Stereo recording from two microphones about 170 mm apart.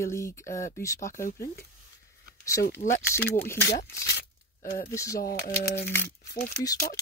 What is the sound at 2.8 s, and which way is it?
Speech, 40° left (ahead or behind).